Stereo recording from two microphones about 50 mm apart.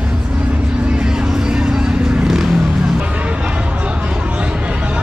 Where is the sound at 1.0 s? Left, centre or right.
Centre.